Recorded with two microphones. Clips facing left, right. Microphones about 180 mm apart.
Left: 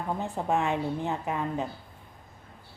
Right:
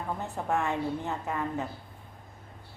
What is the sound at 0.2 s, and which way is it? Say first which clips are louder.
A woman's voice: left 2 dB; 15° left (ahead or behind).